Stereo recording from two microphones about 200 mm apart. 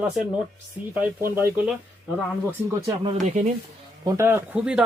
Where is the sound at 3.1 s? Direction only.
35° right (ahead or behind).